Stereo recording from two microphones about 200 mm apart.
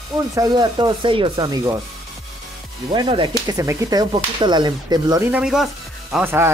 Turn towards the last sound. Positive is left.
turn(degrees=-10)  # may be behind; listen again after turning